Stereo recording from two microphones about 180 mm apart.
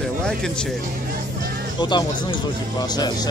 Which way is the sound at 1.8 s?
25° left (ahead or behind).